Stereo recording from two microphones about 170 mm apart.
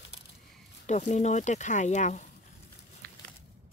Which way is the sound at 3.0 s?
60° right (ahead or behind).